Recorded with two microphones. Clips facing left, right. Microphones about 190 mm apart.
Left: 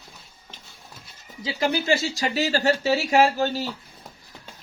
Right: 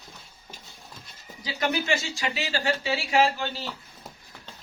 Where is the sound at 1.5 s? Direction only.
25° left (ahead or behind).